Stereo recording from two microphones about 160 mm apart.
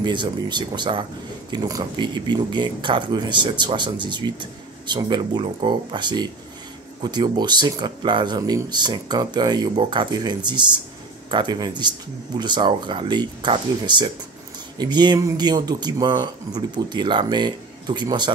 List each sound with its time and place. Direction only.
0.0 s speech: 30° right (ahead or behind)